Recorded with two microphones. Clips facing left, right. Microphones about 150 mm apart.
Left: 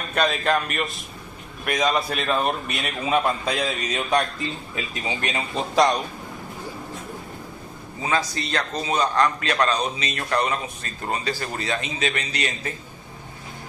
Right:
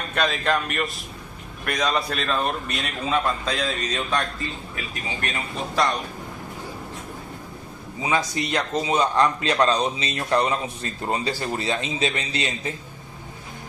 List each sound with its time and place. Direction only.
0.1 s a man's voice: centre (ahead or behind); by 5.9 s 20° left (ahead or behind)
8.0 s a man's voice: 15° right (ahead or behind)